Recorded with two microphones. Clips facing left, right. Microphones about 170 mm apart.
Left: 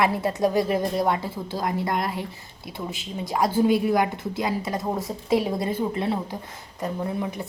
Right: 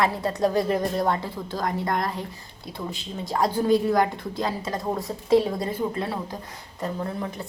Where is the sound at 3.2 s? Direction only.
20° left (ahead or behind).